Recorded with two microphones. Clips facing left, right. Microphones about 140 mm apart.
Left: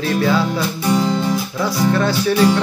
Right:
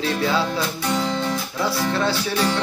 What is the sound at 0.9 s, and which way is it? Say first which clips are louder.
Guitar: left 6 dB; 10° left (ahead or behind).